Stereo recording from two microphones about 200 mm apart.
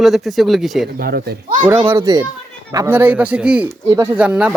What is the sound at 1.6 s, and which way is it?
Speech, 10° right (ahead or behind).